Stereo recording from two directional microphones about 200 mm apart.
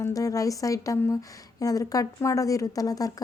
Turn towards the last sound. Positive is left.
turn(degrees=20)  # may be behind; listen again after turning